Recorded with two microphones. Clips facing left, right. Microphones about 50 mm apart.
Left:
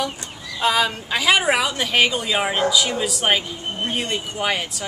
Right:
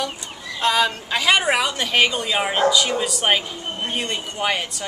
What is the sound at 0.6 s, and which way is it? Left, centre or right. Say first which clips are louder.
Speech: even; centre.